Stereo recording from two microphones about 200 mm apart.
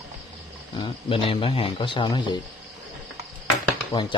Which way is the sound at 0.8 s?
25° left (ahead or behind).